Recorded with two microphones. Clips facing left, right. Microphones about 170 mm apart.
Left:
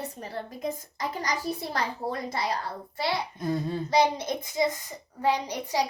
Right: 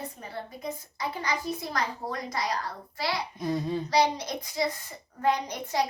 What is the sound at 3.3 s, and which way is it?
Speech, centre (ahead or behind).